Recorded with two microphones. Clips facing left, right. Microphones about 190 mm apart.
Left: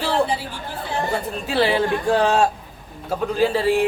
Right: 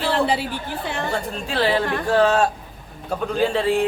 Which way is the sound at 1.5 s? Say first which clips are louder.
Left 2 dB; 10° left (ahead or behind).